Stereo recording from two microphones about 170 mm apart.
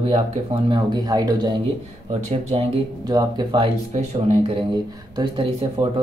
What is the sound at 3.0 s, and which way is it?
Speech, 25° right (ahead or behind).